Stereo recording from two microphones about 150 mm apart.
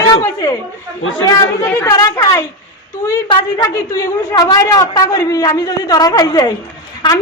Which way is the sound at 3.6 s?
25° left (ahead or behind).